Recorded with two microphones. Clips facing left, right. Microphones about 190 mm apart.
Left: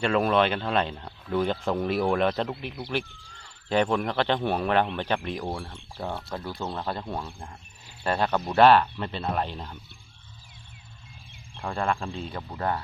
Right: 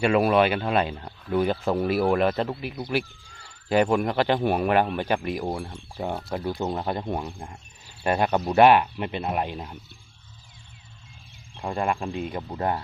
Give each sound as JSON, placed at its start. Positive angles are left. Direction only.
{"t": 0.0, "sound": "a man's voice", "side_deg": -10}
{"t": 11.5, "sound": "a man's voice", "side_deg": -15}
{"t": 12.5, "sound": "speech", "side_deg": -25}